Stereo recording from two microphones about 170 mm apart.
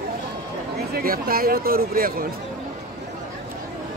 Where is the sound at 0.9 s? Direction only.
60° right (ahead or behind).